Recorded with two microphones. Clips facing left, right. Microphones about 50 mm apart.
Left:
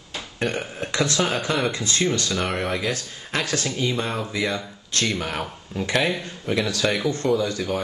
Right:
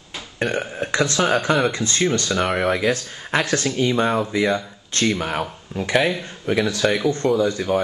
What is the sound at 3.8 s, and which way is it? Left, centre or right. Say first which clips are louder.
Speech: right 6 dB; centre.